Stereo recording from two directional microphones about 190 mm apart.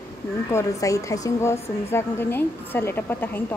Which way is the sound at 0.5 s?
15° left (ahead or behind).